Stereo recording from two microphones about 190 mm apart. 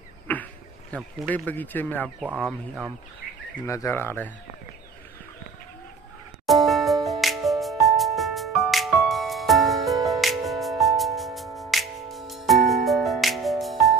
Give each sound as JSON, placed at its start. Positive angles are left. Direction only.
{"t": 0.3, "sound": "a sound", "side_deg": 10}
{"t": 0.9, "sound": "speech", "side_deg": 5}
{"t": 3.6, "sound": "speech", "side_deg": 15}
{"t": 6.4, "sound": "music", "side_deg": 0}